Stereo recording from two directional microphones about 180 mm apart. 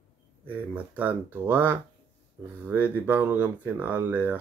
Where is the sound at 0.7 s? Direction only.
10° right (ahead or behind).